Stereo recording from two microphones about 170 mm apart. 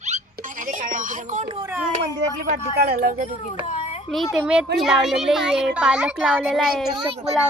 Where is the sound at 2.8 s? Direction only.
60° right (ahead or behind).